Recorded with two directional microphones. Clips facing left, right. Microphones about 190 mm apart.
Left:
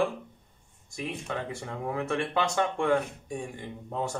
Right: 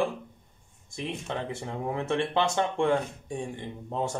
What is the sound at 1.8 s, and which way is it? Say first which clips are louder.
Speech: right 1 dB; 25° right (ahead or behind).